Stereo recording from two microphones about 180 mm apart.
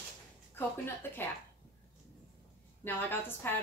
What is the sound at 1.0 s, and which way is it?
Speech, 10° left (ahead or behind).